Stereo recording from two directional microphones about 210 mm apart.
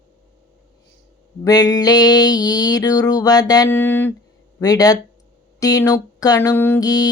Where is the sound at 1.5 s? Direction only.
20° left (ahead or behind).